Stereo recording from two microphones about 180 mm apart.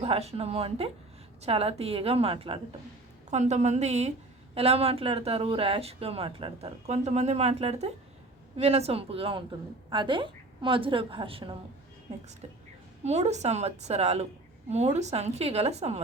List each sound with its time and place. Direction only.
0.0 s a woman's voice: 35° right (ahead or behind)
13.1 s speech: 40° right (ahead or behind)